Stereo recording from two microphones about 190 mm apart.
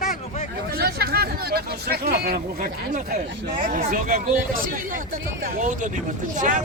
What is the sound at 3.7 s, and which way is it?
Speech, 45° right (ahead or behind).